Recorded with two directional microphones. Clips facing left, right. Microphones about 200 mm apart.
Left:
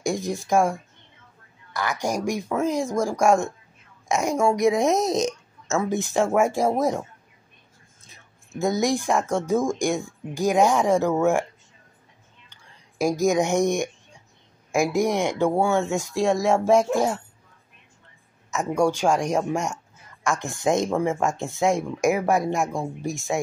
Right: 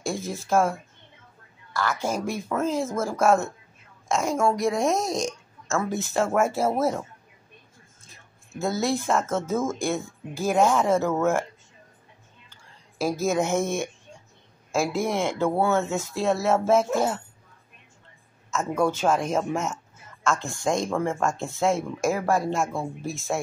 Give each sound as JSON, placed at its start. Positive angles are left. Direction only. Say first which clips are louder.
{"t": 0.0, "sound": "speech", "louder": "left 4 dB", "side_deg": 15}
{"t": 8.5, "sound": "speech", "louder": "left 3 dB", "side_deg": 15}
{"t": 12.4, "sound": "whispering", "louder": "even", "side_deg": 15}
{"t": 14.7, "sound": "speech", "louder": "left 3 dB", "side_deg": 15}
{"t": 18.5, "sound": "speech", "louder": "left 2 dB", "side_deg": 15}